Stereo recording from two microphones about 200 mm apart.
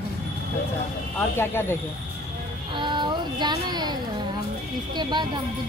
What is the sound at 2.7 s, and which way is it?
Speech, 25° right (ahead or behind).